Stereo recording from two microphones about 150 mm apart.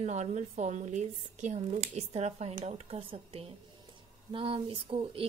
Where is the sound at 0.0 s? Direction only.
50° right (ahead or behind).